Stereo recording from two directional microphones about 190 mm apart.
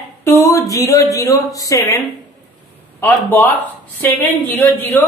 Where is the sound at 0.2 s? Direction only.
15° left (ahead or behind).